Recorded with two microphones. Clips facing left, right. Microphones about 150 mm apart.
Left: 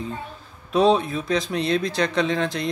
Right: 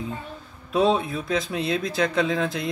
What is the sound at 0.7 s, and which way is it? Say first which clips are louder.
Speech: left 3 dB; centre (ahead or behind).